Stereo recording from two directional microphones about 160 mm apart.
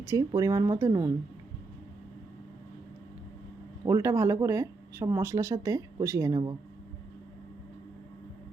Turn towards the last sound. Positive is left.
turn(degrees=-25)  # may be behind; listen again after turning